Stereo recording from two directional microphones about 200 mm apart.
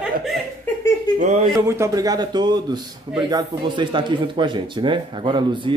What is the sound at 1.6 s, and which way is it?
Speech, 15° right (ahead or behind).